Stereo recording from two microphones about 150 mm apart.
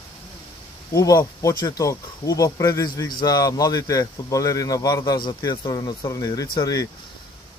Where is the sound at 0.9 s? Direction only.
25° left (ahead or behind).